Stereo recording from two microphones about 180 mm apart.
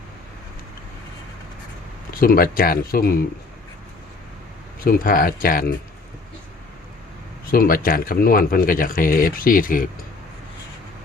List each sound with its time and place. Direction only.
2.2 s speech: 55° left (ahead or behind)
4.8 s speech: 55° left (ahead or behind)
7.4 s speech: 55° left (ahead or behind)